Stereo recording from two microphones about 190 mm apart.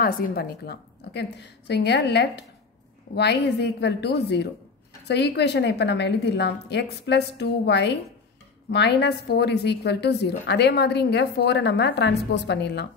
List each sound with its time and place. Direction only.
0.0 s a woman's voice: 55° left (ahead or behind)